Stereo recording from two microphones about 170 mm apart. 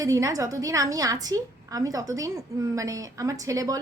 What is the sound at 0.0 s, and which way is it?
A woman's voice, 20° right (ahead or behind).